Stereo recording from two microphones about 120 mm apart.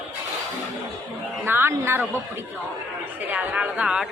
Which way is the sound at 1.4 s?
20° right (ahead or behind).